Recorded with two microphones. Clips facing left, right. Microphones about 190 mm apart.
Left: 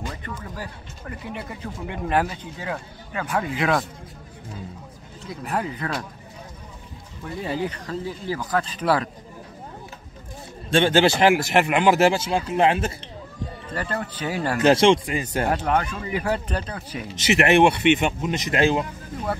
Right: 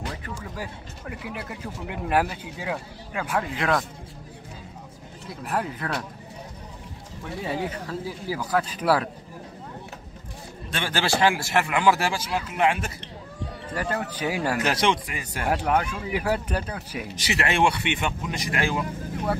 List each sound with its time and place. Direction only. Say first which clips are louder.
0.1 s speech: left 1 dB; 10° right (ahead or behind)
5.2 s speech: left 1 dB; centre (ahead or behind)
7.4 s speech: left 2 dB; 5° right (ahead or behind)
10.7 s speech: left 9 dB; 25° left (ahead or behind)
13.9 s speech: left 2 dB; 10° right (ahead or behind)
14.6 s speech: left 12 dB; 25° left (ahead or behind)
15.5 s speech: left 1 dB; 10° right (ahead or behind)
17.1 s speech: left 9 dB; 25° left (ahead or behind)